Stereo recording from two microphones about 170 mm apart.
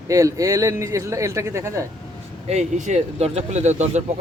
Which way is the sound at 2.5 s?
45° right (ahead or behind).